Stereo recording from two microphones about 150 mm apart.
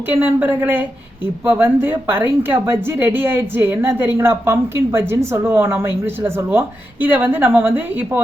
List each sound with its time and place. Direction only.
0.1 s speech: 10° right (ahead or behind)